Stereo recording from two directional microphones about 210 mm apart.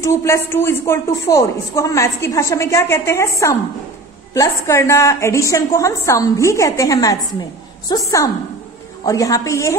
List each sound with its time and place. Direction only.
0.0 s a woman's voice: 10° left (ahead or behind)